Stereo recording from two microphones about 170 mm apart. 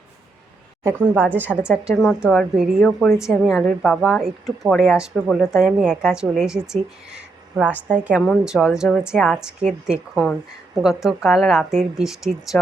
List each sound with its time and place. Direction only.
0.9 s speech: 10° right (ahead or behind)